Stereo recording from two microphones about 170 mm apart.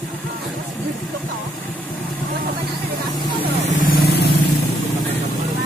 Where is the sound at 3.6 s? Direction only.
50° left (ahead or behind); by 4.3 s 70° left (ahead or behind).